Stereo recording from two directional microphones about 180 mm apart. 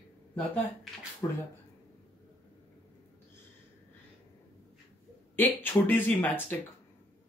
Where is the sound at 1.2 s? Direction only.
20° left (ahead or behind).